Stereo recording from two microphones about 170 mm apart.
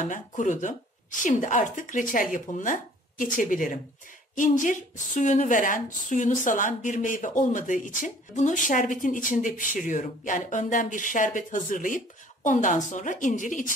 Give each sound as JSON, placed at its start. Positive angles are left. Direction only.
{"t": 0.0, "sound": "a woman's voice", "side_deg": 50}